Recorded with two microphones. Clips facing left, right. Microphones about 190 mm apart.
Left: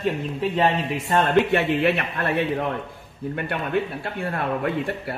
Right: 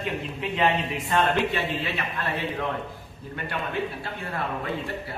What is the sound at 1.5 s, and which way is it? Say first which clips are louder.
Speech: left 8 dB; 60° left (ahead or behind).